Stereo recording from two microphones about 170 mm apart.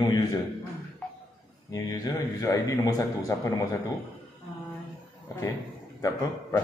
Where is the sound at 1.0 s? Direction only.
5° left (ahead or behind).